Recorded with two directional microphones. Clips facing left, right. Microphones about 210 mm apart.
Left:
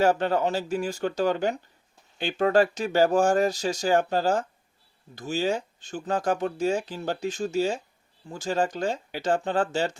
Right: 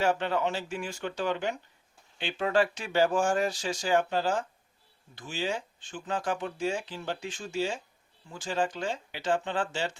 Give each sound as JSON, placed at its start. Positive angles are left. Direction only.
{"t": 0.0, "sound": "speech", "side_deg": 40}